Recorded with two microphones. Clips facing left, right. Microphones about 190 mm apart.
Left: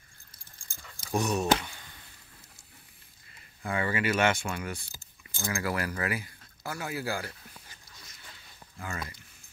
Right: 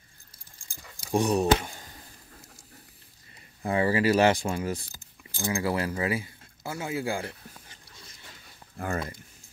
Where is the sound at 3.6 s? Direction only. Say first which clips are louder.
Right 6 dB; 30° right (ahead or behind).